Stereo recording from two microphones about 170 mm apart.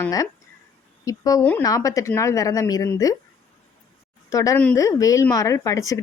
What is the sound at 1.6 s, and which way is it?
A woman's voice, 20° left (ahead or behind).